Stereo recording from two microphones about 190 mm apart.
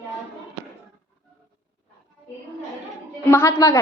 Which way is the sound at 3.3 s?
15° left (ahead or behind).